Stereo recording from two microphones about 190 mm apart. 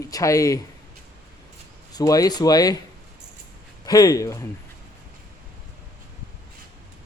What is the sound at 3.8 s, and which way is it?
Speech, 20° left (ahead or behind).